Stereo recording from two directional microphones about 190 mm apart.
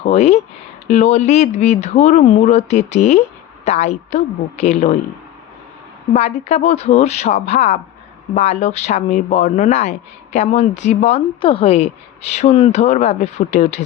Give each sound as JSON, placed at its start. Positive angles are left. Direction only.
{"t": 0.0, "sound": "speech", "side_deg": 35}
{"t": 6.1, "sound": "speech", "side_deg": 35}